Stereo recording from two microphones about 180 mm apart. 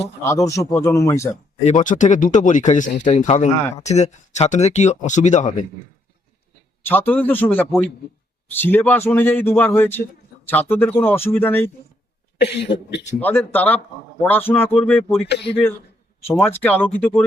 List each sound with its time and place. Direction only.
0.3 s speech: 15° left (ahead or behind)
1.3 s speech: 45° left (ahead or behind)
6.8 s speech: 10° left (ahead or behind)
12.4 s speech: 65° left (ahead or behind)
13.1 s speech: 10° left (ahead or behind)
14.8 s speech: centre (ahead or behind)
16.2 s speech: 10° left (ahead or behind)